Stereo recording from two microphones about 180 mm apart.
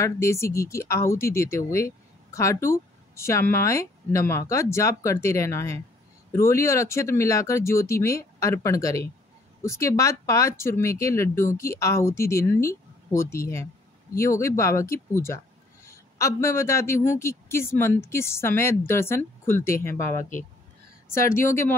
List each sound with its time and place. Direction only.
0.0 s speech: 15° left (ahead or behind)
20.2 s speech: 45° left (ahead or behind)
21.1 s speech: 15° left (ahead or behind)